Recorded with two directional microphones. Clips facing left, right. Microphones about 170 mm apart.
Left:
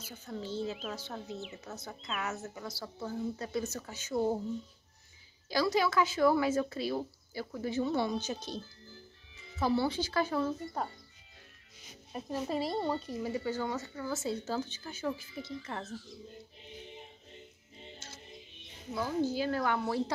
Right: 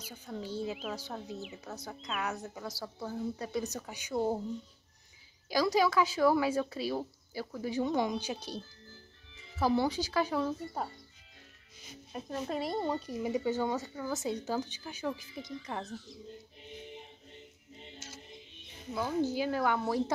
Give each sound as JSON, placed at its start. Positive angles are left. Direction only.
{"t": 0.1, "sound": "speech", "side_deg": -10}
{"t": 5.5, "sound": "speech", "side_deg": -10}
{"t": 12.1, "sound": "speech", "side_deg": 5}
{"t": 13.0, "sound": "speech", "side_deg": -15}
{"t": 19.3, "sound": "speech", "side_deg": -15}